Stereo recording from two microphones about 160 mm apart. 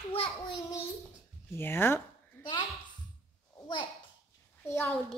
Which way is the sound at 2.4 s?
10° left (ahead or behind).